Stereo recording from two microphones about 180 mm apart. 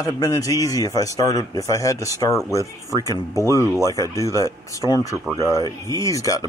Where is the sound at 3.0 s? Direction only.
15° left (ahead or behind).